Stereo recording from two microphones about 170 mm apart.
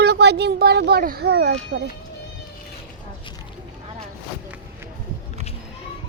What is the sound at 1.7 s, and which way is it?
Speech, 90° right.